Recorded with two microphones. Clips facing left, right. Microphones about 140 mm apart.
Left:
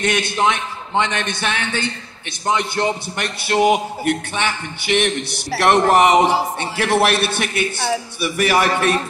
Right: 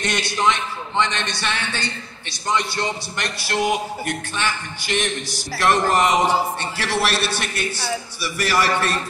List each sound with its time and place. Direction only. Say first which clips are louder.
0.0 s a man's voice: left 3 dB; 55° left (ahead or behind)